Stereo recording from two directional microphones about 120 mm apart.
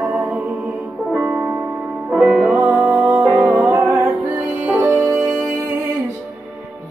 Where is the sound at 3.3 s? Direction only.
Centre (ahead or behind).